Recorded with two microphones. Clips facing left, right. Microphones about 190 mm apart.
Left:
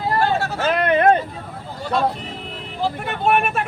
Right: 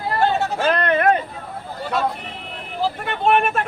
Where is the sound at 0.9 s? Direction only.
30° left (ahead or behind).